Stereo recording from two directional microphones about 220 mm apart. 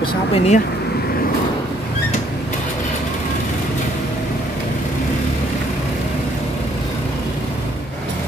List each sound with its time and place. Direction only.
0.0 s speech: 25° left (ahead or behind)